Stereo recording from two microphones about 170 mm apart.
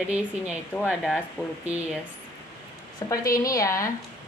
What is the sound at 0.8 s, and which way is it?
Speech, 5° right (ahead or behind).